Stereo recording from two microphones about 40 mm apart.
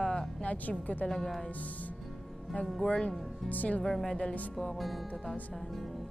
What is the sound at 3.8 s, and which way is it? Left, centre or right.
Speech, centre.